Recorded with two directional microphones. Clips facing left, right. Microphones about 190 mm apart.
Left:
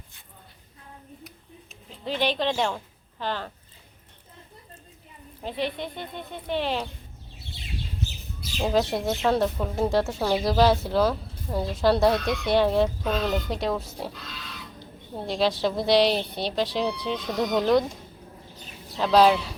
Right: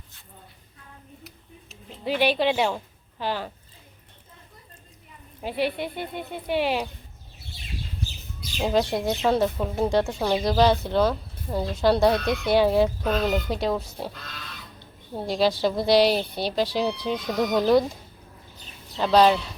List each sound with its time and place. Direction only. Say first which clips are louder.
2.0 s a woman's voice: right 3 dB; 10° right (ahead or behind)
5.4 s speech: right 3 dB; 10° right (ahead or behind)
8.4 s speech: right 1 dB; centre (ahead or behind)
15.1 s speech: right 2 dB; centre (ahead or behind)
18.9 s speech: even; centre (ahead or behind)